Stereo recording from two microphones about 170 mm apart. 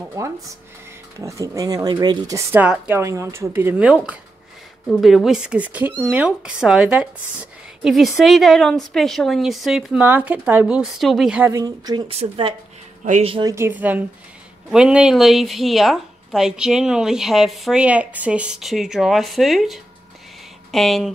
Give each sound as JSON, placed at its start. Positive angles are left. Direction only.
{"t": 0.2, "sound": "a woman's voice", "side_deg": -20}
{"t": 11.5, "sound": "speech", "side_deg": -20}
{"t": 12.1, "sound": "speech", "side_deg": -35}
{"t": 13.0, "sound": "speech", "side_deg": -45}
{"t": 13.3, "sound": "a woman's voice", "side_deg": -20}